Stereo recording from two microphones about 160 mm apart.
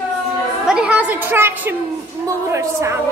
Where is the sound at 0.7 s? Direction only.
5° right (ahead or behind).